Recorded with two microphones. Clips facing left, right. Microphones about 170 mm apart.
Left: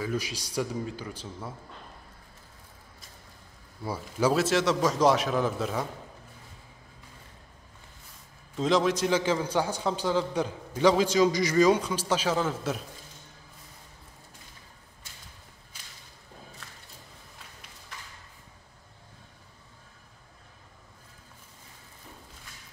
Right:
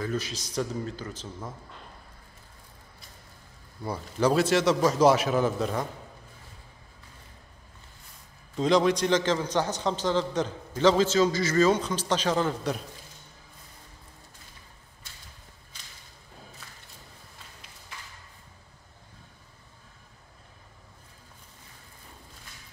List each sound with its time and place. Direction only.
0.0 s a man's voice: 10° left (ahead or behind)
3.8 s a man's voice: 5° left (ahead or behind)
8.5 s a man's voice: centre (ahead or behind)